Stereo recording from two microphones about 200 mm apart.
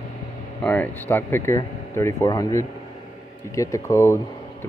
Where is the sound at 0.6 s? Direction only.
10° left (ahead or behind).